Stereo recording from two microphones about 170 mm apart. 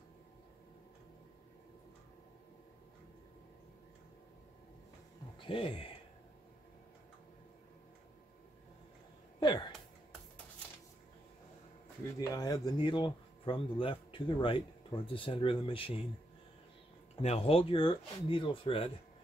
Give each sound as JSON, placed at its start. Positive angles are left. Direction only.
{"t": 5.4, "sound": "speech", "side_deg": 30}
{"t": 9.4, "sound": "a sound", "side_deg": 25}
{"t": 12.2, "sound": "speech", "side_deg": 20}
{"t": 17.1, "sound": "speech", "side_deg": 35}